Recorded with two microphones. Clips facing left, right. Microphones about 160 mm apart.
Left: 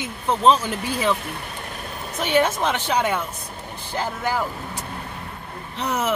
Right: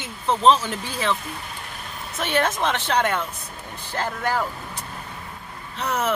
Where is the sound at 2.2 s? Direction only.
10° left (ahead or behind).